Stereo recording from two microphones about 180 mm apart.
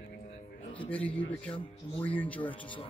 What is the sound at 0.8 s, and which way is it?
A man's voice, 10° left (ahead or behind).